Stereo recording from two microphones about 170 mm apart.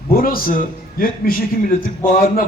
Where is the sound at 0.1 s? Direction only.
60° left (ahead or behind).